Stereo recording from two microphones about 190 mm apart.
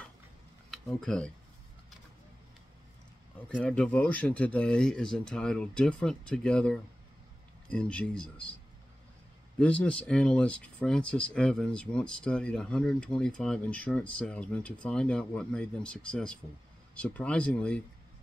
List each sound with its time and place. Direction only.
0.7 s speech: 5° left (ahead or behind)
3.5 s speech: 5° left (ahead or behind)
9.6 s speech: 5° left (ahead or behind)